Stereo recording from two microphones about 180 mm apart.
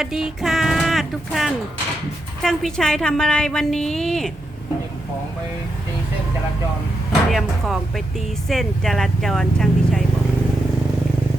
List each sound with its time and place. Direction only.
0.0 s a sound: 5° right (ahead or behind)
2.4 s a woman's voice: centre (ahead or behind)
7.1 s a woman's voice: centre (ahead or behind)